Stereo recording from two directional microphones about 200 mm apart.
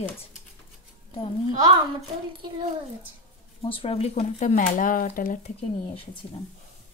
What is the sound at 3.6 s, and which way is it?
A woman's voice, 25° left (ahead or behind).